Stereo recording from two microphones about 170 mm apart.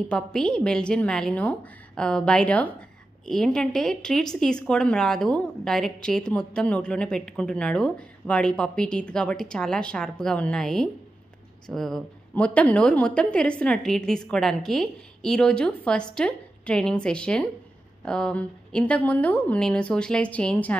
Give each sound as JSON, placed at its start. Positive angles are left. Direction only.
{"t": 0.1, "sound": "a woman's voice", "side_deg": 5}